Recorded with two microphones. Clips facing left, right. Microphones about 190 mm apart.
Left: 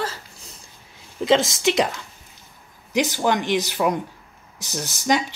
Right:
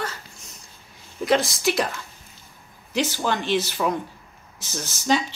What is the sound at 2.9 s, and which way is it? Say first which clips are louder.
Speech: left 3 dB; 15° left (ahead or behind).